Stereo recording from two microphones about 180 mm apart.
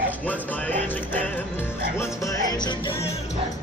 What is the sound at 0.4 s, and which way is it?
Music, 10° left (ahead or behind).